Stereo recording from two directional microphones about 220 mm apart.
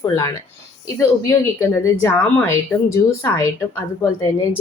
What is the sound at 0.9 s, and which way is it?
A woman's voice, 10° left (ahead or behind).